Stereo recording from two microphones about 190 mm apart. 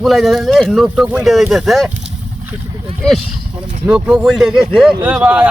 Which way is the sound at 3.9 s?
5° right (ahead or behind).